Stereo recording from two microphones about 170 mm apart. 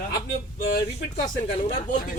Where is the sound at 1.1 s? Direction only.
45° left (ahead or behind).